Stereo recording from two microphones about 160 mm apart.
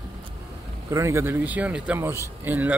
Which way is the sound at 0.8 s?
20° right (ahead or behind).